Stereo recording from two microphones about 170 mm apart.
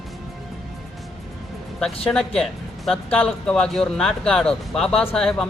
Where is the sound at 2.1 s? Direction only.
15° left (ahead or behind).